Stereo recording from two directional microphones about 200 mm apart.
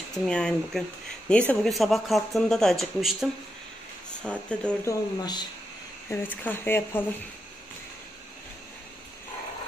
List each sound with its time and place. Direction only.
0.3 s speech: 5° left (ahead or behind)
5.2 s speech: 20° left (ahead or behind)
6.0 s speech: 10° left (ahead or behind)